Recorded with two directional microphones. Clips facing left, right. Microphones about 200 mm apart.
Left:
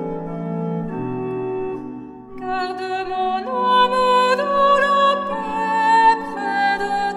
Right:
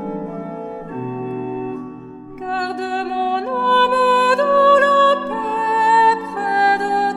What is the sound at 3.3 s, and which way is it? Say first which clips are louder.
Music: right 2 dB; 50° right (ahead or behind).